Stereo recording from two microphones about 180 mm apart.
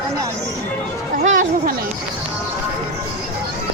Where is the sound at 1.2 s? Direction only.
45° right (ahead or behind).